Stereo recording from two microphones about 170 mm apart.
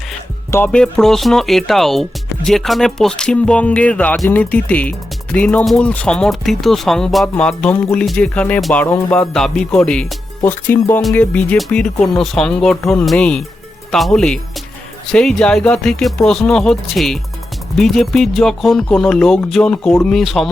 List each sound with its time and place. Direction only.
0.5 s speech: 10° left (ahead or behind)